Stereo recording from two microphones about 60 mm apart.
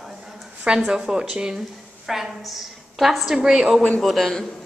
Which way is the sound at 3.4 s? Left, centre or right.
Centre.